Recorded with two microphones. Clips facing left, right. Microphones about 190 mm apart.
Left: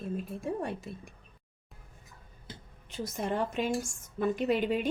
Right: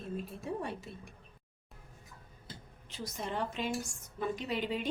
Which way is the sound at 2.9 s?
50° left (ahead or behind).